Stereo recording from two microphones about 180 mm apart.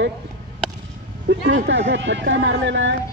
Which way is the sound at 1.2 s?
75° right (ahead or behind).